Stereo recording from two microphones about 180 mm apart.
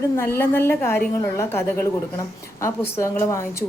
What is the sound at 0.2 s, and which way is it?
A woman's voice, 15° left (ahead or behind).